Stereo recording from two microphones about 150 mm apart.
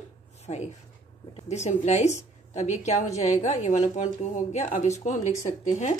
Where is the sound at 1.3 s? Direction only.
50° left (ahead or behind).